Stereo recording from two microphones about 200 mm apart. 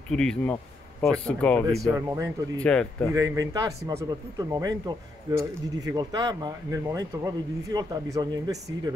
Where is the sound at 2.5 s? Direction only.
5° left (ahead or behind).